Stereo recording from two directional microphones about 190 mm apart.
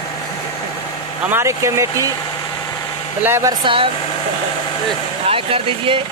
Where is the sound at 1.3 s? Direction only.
10° right (ahead or behind).